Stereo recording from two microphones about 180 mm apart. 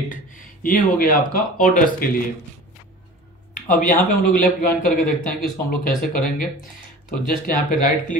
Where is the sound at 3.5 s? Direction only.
45° left (ahead or behind).